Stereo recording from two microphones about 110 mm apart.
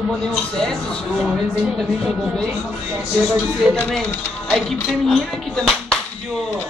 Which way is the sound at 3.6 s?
Centre (ahead or behind).